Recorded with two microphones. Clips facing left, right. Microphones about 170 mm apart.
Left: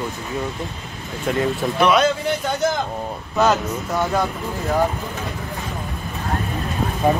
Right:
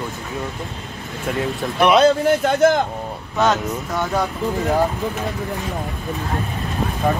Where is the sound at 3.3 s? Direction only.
Centre (ahead or behind).